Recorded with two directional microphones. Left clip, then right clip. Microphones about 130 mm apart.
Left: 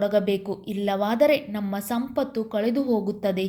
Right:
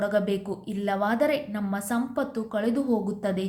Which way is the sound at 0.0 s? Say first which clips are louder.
Left 3 dB; 20° left (ahead or behind).